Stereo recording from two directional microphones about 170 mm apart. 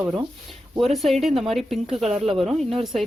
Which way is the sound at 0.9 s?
Centre (ahead or behind).